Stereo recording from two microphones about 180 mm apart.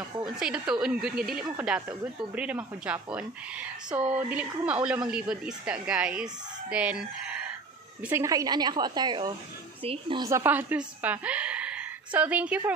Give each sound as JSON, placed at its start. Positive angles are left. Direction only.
{"t": 0.4, "sound": "speech", "side_deg": -5}
{"t": 8.1, "sound": "a woman's voice", "side_deg": -15}